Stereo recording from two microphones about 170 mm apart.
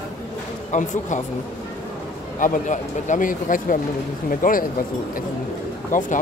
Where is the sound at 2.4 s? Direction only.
50° left (ahead or behind).